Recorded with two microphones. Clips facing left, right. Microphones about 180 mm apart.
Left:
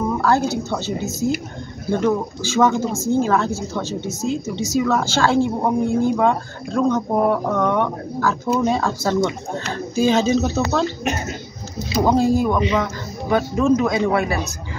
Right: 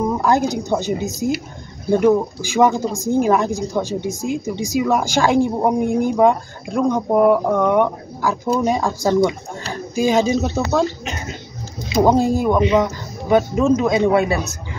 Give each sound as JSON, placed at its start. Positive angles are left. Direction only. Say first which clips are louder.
{"t": 0.0, "sound": "a woman's voice", "louder": "right 1 dB", "side_deg": -15}
{"t": 11.9, "sound": "a woman's voice", "louder": "right 2 dB", "side_deg": -15}